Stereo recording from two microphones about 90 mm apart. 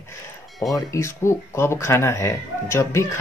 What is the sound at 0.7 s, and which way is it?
Speech, 30° left (ahead or behind).